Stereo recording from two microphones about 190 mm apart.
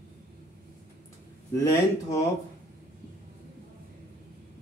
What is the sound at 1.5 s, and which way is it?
Speech, 15° left (ahead or behind).